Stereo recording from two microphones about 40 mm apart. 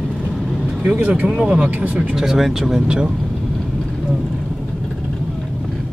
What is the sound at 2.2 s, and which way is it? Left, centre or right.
Speech, centre.